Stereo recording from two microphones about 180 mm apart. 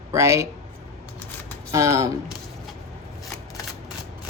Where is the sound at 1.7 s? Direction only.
15° right (ahead or behind).